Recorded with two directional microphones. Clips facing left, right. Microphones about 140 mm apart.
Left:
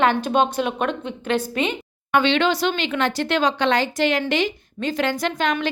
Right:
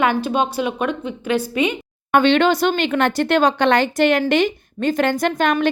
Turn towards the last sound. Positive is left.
turn(degrees=-50)  # may be behind; listen again after turning